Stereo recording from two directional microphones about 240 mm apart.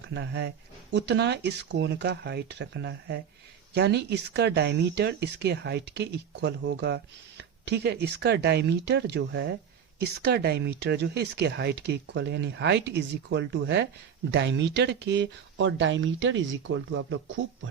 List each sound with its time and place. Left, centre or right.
0.1 s speech: right